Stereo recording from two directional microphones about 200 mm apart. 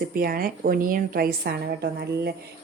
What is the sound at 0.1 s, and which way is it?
A woman's voice, 45° right (ahead or behind).